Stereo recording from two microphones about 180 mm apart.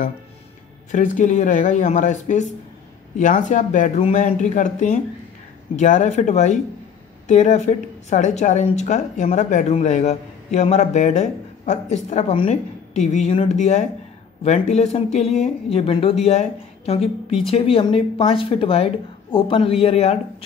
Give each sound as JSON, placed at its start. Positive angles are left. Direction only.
{"t": 0.9, "sound": "a woman's voice", "side_deg": 45}